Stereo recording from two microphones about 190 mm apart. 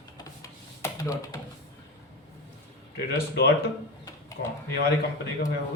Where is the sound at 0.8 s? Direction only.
15° left (ahead or behind).